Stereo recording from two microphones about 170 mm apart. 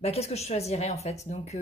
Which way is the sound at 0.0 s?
35° left (ahead or behind).